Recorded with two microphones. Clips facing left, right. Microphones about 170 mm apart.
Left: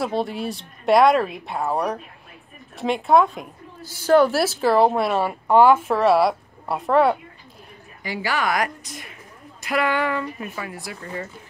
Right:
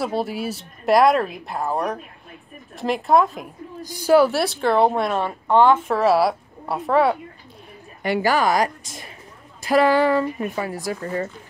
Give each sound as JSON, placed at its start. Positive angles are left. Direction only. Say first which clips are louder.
{"t": 0.0, "sound": "a woman's voice", "louder": "even", "side_deg": -5}
{"t": 3.8, "sound": "a woman's voice", "louder": "right 1 dB", "side_deg": -15}
{"t": 8.2, "sound": "speech", "louder": "right 5 dB", "side_deg": -45}
{"t": 8.5, "sound": "a woman's voice", "louder": "right 4 dB", "side_deg": -30}